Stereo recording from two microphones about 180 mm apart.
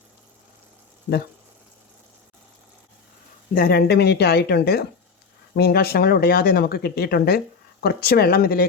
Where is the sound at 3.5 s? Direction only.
55° left (ahead or behind).